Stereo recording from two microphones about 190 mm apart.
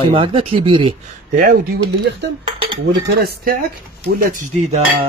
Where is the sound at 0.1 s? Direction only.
30° right (ahead or behind).